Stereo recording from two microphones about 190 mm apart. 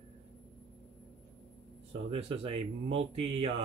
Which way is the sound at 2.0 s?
30° right (ahead or behind).